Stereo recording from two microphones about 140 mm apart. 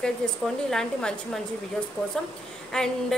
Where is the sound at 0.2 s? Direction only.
5° left (ahead or behind).